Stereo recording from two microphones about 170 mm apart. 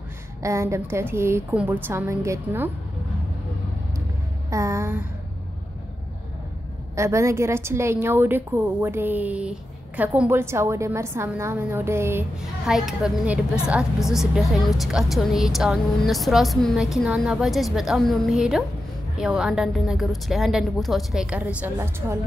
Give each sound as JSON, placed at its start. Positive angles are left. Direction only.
{"t": 0.4, "sound": "a woman's voice", "side_deg": -15}
{"t": 4.5, "sound": "a woman's voice", "side_deg": -15}
{"t": 7.0, "sound": "a woman's voice", "side_deg": -15}
{"t": 12.4, "sound": "a woman's voice", "side_deg": -5}